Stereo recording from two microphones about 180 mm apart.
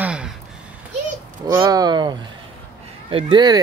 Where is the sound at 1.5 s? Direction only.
20° right (ahead or behind).